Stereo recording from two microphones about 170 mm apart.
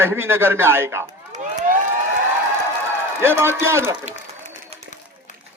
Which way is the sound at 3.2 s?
15° right (ahead or behind).